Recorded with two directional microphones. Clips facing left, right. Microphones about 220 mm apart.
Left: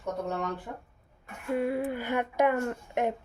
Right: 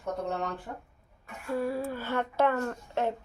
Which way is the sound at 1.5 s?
20° left (ahead or behind).